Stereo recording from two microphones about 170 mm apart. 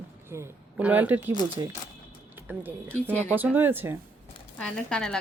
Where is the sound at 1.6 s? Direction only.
20° right (ahead or behind).